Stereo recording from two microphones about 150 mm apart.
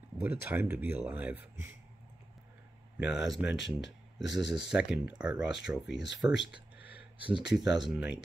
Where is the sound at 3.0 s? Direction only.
5° right (ahead or behind).